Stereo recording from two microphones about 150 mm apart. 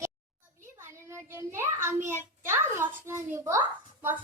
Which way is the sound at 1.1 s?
15° right (ahead or behind).